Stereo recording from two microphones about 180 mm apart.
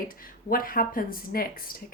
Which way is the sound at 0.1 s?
50° left (ahead or behind).